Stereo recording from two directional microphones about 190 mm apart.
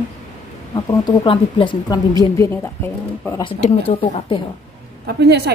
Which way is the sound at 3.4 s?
30° left (ahead or behind).